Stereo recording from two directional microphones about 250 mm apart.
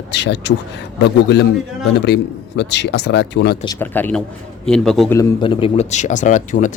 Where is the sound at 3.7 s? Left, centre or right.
Centre.